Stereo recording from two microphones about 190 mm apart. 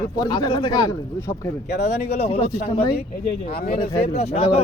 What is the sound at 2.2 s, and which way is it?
Speech, 30° left (ahead or behind).